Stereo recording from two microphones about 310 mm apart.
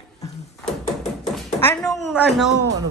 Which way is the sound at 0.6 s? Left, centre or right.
Centre.